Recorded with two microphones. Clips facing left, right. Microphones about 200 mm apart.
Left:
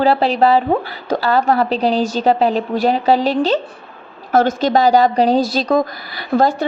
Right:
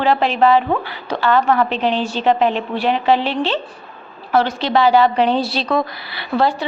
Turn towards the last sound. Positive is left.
turn(degrees=45)  # may be behind; listen again after turning